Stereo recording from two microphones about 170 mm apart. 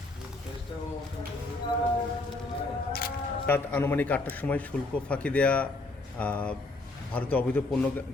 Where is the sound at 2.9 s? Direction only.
60° left (ahead or behind).